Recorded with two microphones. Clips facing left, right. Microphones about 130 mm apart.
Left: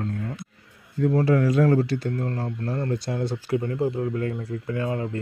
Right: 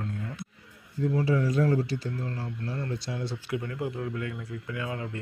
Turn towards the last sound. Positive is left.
turn(degrees=35)  # may be behind; listen again after turning